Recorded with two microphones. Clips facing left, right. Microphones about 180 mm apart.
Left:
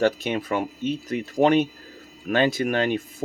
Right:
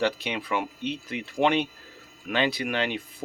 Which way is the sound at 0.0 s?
45° left (ahead or behind).